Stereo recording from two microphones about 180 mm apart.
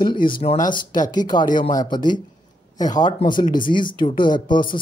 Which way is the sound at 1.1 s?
25° left (ahead or behind).